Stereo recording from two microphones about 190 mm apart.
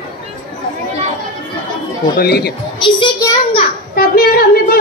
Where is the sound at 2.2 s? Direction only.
55° left (ahead or behind).